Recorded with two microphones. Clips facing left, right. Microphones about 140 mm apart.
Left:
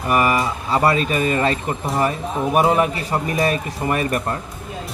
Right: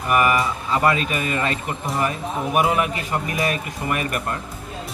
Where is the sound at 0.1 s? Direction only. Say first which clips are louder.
Left 1 dB; 30° left (ahead or behind).